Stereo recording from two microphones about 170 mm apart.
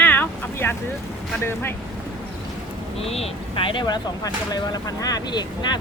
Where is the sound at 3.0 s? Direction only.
35° left (ahead or behind).